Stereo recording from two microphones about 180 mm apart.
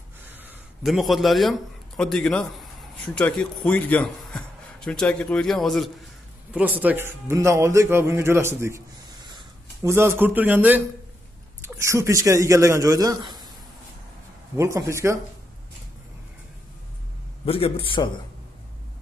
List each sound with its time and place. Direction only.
0.3 s a sound: 10° right (ahead or behind)
0.8 s a man's voice: centre (ahead or behind)
6.5 s speech: 10° right (ahead or behind)
14.6 s speech: 15° right (ahead or behind)
17.5 s a man's voice: 30° left (ahead or behind)